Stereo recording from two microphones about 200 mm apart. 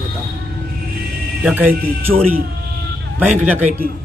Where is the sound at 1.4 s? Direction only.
10° right (ahead or behind).